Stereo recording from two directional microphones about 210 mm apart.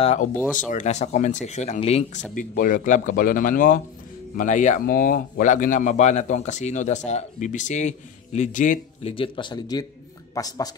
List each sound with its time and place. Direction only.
0.0 s a man's voice: 30° left (ahead or behind)
2.3 s a man's voice: 40° left (ahead or behind)
9.1 s speech: 25° left (ahead or behind)